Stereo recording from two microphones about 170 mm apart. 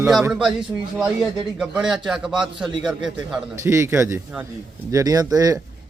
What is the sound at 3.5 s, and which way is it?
A man's voice, 15° right (ahead or behind).